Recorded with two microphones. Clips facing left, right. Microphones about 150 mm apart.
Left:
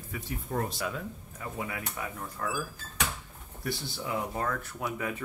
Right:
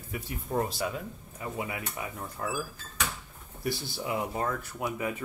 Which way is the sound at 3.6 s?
10° right (ahead or behind).